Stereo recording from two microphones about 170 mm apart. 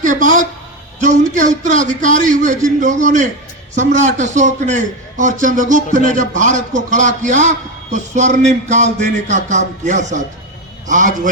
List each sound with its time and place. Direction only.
0.0 s a woman's voice: 50° right (ahead or behind)